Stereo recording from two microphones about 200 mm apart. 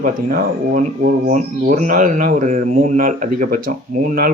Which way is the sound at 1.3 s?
40° right (ahead or behind).